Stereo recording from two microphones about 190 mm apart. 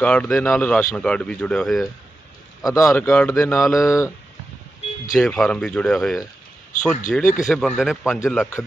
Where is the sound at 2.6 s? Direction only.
15° left (ahead or behind).